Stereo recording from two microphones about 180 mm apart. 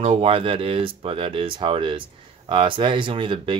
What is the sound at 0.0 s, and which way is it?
Speech, 35° right (ahead or behind).